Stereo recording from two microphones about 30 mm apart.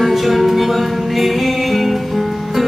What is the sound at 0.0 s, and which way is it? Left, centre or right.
Music, centre.